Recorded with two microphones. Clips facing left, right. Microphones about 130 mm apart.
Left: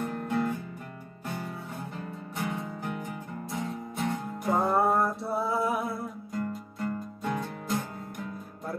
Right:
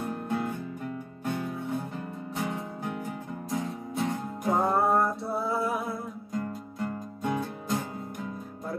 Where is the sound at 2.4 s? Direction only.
15° right (ahead or behind).